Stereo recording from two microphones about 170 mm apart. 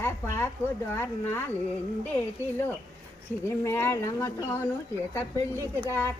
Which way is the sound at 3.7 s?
15° left (ahead or behind).